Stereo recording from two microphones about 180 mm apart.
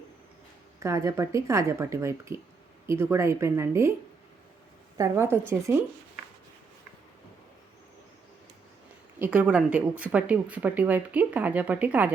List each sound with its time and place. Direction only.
0.8 s speech: 15° right (ahead or behind)
4.9 s speech: 15° right (ahead or behind)
9.1 s speech: 10° right (ahead or behind)